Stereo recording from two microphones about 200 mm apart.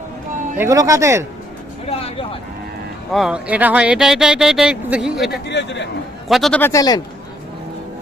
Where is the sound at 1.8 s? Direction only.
30° left (ahead or behind).